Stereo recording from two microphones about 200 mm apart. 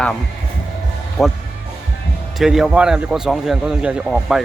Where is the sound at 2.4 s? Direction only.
Centre (ahead or behind).